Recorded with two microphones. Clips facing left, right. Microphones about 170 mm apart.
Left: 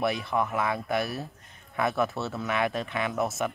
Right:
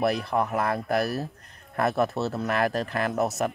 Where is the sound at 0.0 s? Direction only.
Centre (ahead or behind).